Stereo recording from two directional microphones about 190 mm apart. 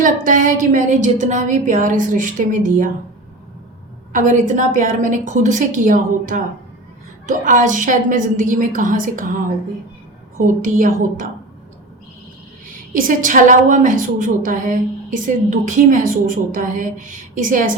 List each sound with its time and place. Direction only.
0.0 s a woman's voice: 45° right (ahead or behind)
4.1 s a woman's voice: 40° right (ahead or behind)
12.9 s a woman's voice: 45° right (ahead or behind)